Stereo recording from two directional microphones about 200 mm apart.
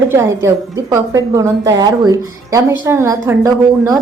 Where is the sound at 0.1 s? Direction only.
15° right (ahead or behind).